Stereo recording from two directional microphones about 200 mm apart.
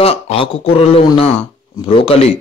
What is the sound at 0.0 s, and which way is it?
A man's voice, 30° left (ahead or behind).